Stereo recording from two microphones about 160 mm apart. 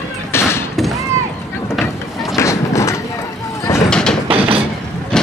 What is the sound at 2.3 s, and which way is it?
Vehicle, 20° left (ahead or behind).